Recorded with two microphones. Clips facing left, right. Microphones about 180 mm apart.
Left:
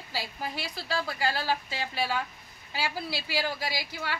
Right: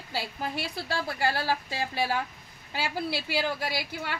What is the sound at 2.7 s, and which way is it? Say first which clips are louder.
A woman's voice: right 2 dB; 55° right (ahead or behind).